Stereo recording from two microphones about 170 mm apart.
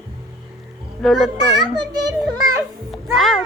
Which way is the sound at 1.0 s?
Centre (ahead or behind).